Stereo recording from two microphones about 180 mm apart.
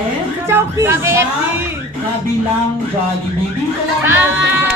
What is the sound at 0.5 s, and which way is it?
Speech, 15° right (ahead or behind).